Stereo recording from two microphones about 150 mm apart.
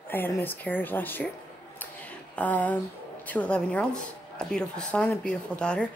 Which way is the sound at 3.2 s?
10° left (ahead or behind).